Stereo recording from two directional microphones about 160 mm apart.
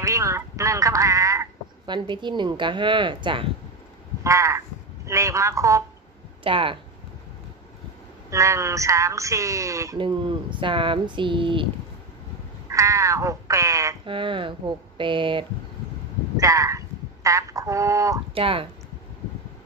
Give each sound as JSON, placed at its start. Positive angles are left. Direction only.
{"t": 0.0, "sound": "speech", "side_deg": -20}
{"t": 4.2, "sound": "speech", "side_deg": -20}
{"t": 6.4, "sound": "speech", "side_deg": -35}
{"t": 8.3, "sound": "speech", "side_deg": -20}
{"t": 9.9, "sound": "speech", "side_deg": -30}
{"t": 12.6, "sound": "speech", "side_deg": -20}
{"t": 14.0, "sound": "speech", "side_deg": -30}
{"t": 16.3, "sound": "speech", "side_deg": -20}
{"t": 18.3, "sound": "speech", "side_deg": -35}